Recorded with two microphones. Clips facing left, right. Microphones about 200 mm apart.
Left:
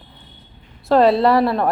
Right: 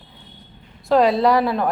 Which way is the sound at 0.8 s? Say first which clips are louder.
Left 2 dB; centre (ahead or behind).